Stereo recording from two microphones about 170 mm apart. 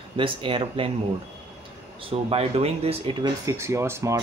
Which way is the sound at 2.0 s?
35° right (ahead or behind).